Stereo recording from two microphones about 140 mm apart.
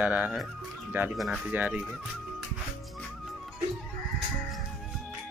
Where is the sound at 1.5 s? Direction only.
10° right (ahead or behind).